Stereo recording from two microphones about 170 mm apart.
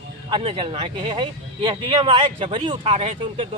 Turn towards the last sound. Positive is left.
turn(degrees=-35)  # may be behind; listen again after turning